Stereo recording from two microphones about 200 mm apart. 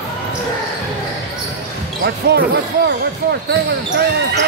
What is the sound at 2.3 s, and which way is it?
Speech, 55° right (ahead or behind).